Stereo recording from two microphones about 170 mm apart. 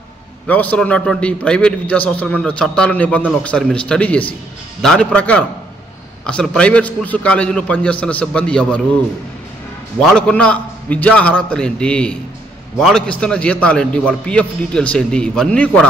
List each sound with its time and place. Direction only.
0.5 s a man's voice: 10° left (ahead or behind)
9.9 s a man's voice: 5° left (ahead or behind)